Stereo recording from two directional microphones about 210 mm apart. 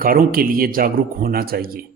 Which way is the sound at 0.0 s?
45° right (ahead or behind).